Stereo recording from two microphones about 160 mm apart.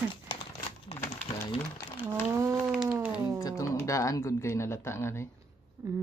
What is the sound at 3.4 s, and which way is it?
Speech, 20° left (ahead or behind).